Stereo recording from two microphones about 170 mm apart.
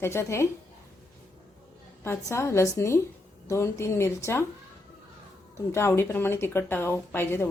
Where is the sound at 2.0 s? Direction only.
15° left (ahead or behind).